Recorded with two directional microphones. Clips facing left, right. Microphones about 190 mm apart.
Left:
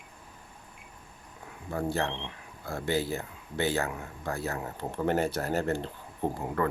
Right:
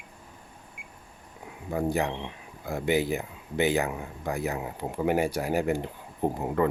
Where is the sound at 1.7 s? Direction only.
15° right (ahead or behind).